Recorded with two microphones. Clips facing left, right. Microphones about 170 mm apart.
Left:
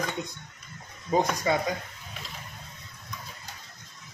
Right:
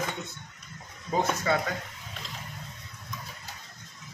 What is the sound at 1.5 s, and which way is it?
Speech, 15° left (ahead or behind).